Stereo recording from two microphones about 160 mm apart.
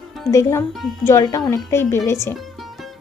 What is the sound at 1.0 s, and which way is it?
A woman's voice, 15° left (ahead or behind).